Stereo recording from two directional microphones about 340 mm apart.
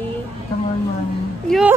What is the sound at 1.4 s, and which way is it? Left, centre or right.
Speech, centre.